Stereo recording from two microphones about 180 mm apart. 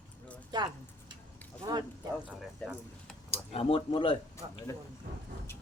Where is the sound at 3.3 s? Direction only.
30° left (ahead or behind).